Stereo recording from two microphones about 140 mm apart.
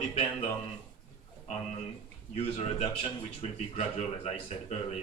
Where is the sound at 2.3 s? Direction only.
45° left (ahead or behind).